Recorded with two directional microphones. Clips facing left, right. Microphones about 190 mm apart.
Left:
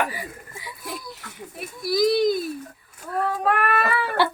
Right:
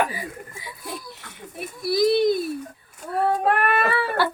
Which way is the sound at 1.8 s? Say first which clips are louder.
Right 1 dB; 25° right (ahead or behind).